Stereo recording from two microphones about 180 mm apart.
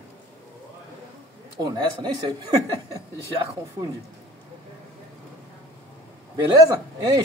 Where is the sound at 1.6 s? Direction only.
25° right (ahead or behind).